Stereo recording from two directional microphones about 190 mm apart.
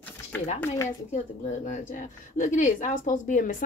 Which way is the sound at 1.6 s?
40° left (ahead or behind).